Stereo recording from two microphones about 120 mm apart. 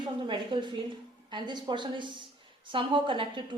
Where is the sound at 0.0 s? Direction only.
40° right (ahead or behind).